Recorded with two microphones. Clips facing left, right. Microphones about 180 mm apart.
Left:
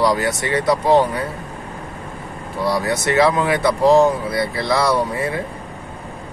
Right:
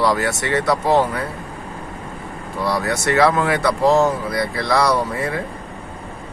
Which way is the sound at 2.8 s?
20° left (ahead or behind).